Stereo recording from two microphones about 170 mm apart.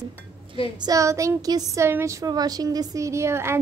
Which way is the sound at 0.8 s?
20° right (ahead or behind).